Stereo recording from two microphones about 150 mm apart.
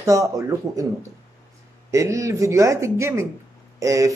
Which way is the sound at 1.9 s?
20° right (ahead or behind).